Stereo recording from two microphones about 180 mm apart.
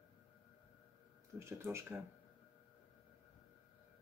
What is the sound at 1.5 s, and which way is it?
Speech, 15° right (ahead or behind).